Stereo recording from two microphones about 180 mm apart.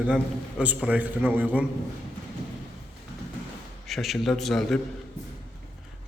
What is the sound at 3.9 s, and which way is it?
Speech, centre (ahead or behind).